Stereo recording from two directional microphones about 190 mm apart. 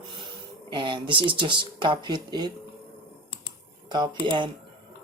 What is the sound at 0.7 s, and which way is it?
Speech, 25° right (ahead or behind).